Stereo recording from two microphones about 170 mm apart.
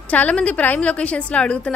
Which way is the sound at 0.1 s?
10° left (ahead or behind).